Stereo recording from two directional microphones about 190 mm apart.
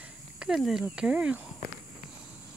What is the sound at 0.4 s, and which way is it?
Speech, 5° right (ahead or behind).